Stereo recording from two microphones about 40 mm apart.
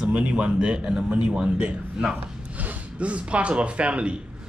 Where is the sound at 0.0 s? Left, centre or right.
Right.